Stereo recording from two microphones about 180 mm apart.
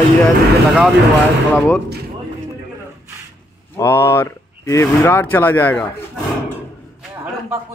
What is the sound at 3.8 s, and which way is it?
Speech, 15° left (ahead or behind).